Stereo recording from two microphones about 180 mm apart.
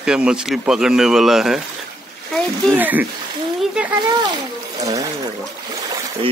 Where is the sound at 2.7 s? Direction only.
10° right (ahead or behind).